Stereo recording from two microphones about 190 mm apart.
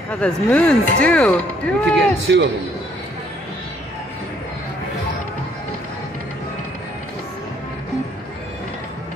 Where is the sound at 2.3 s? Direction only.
65° right (ahead or behind).